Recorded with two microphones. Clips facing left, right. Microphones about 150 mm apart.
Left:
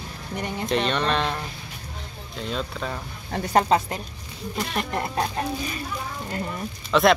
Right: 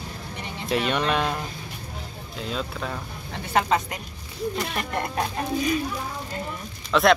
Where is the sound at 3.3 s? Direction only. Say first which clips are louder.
Left 3 dB; 40° left (ahead or behind).